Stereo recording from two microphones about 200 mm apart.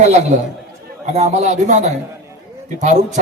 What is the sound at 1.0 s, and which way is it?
Speech, 35° right (ahead or behind).